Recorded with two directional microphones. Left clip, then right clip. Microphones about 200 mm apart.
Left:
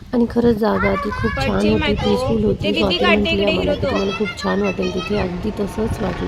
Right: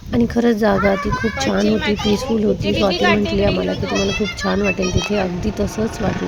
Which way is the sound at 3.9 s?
15° right (ahead or behind).